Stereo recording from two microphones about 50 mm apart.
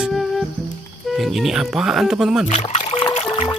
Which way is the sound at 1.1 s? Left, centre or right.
Centre.